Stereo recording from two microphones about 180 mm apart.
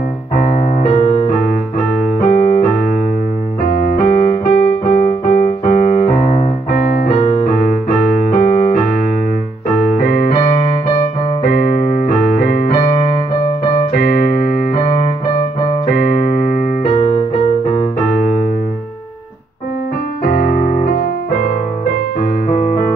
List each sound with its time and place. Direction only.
0.4 s music: 40° left (ahead or behind)
2.1 s keyboard: 55° left (ahead or behind)
7.4 s piano: 50° left (ahead or behind)
9.7 s keyboard: 50° left (ahead or behind)
11.4 s keyboard: 55° left (ahead or behind)
13.9 s keyboard: 55° left (ahead or behind)
15.9 s keyboard: 55° left (ahead or behind)
16.9 s music: 35° left (ahead or behind)
20.2 s piano: 55° left (ahead or behind)
22.5 s music: 45° left (ahead or behind)